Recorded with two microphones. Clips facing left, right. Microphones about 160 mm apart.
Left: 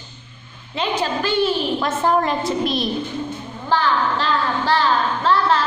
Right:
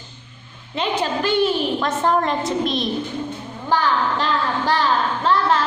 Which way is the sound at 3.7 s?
15° right (ahead or behind).